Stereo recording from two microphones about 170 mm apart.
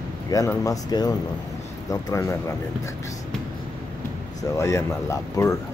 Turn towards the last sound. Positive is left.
turn(degrees=15)  # may be behind; listen again after turning